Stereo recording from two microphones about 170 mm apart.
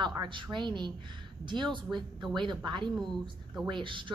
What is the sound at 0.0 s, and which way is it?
A woman's voice, 25° right (ahead or behind).